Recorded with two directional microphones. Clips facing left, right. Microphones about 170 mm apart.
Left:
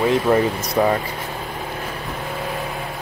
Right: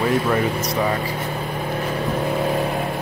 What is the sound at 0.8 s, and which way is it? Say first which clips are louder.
Speech: left 5 dB; 45° left (ahead or behind).